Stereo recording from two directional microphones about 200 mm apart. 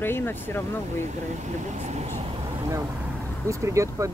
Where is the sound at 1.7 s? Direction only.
35° right (ahead or behind).